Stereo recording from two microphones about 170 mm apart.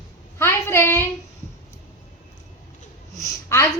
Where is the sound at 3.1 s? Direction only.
15° left (ahead or behind).